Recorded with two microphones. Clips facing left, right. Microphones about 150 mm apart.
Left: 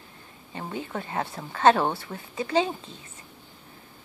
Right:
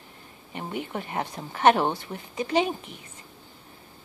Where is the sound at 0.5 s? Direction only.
20° right (ahead or behind).